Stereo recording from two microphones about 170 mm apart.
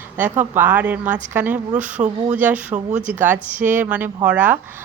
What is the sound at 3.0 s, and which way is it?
A woman's voice, 10° right (ahead or behind).